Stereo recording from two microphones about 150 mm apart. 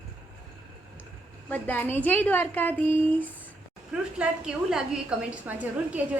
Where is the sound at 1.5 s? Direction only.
15° left (ahead or behind).